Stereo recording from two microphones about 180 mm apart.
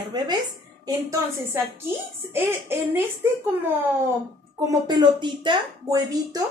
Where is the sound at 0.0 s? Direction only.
25° right (ahead or behind).